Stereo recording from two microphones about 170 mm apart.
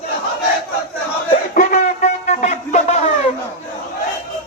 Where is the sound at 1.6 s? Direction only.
45° left (ahead or behind).